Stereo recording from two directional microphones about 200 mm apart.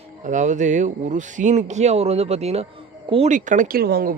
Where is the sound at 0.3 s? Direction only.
40° right (ahead or behind).